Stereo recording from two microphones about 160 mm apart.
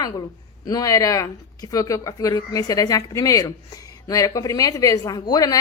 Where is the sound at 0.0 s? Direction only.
25° left (ahead or behind).